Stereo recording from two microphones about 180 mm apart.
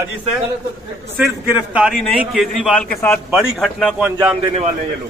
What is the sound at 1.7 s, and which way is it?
A man's voice, 5° right (ahead or behind).